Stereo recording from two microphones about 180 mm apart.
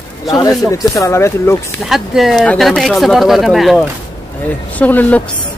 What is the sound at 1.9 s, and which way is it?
Speech, centre (ahead or behind).